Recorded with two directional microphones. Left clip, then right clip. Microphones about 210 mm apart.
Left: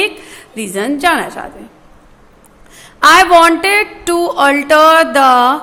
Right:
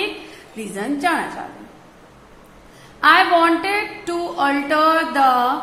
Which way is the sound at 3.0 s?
45° left (ahead or behind).